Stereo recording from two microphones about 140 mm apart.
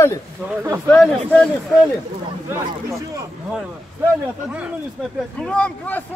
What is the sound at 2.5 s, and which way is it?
Speech, 20° right (ahead or behind).